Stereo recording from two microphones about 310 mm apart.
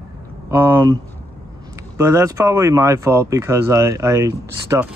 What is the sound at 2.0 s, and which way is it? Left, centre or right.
Speech, centre.